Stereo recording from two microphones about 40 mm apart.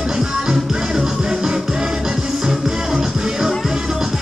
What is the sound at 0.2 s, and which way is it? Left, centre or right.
Music, centre.